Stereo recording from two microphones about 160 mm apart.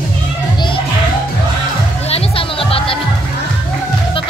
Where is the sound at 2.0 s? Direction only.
35° left (ahead or behind).